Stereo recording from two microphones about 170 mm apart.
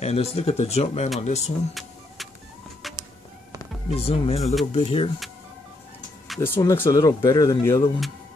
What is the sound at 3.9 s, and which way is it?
Speech, 35° left (ahead or behind).